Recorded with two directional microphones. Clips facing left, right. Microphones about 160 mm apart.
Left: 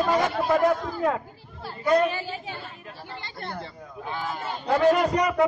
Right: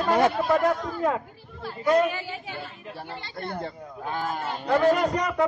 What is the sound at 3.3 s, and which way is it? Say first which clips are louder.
A man's voice: right 4 dB; 50° right (ahead or behind).